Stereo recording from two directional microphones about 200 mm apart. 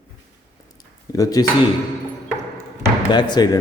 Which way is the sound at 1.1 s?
20° left (ahead or behind).